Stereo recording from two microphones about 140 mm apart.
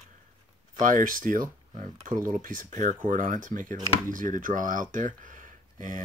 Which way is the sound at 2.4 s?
70° right (ahead or behind).